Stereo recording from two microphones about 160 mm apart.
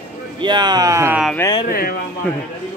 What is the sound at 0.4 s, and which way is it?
Speech, 30° right (ahead or behind).